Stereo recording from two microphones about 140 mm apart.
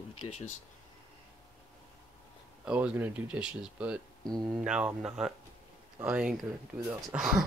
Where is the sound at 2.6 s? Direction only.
10° right (ahead or behind).